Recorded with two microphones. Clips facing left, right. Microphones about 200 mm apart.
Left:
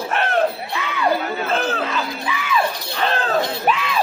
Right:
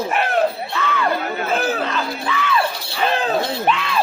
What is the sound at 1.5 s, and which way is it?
Chatter, 10° right (ahead or behind).